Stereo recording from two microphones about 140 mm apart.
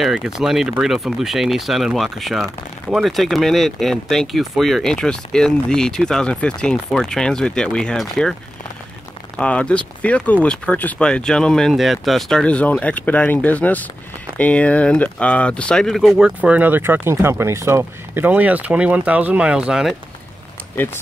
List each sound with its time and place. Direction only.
0.0 s speech: 5° right (ahead or behind)
9.4 s speech: 10° left (ahead or behind)
20.7 s speech: 15° left (ahead or behind)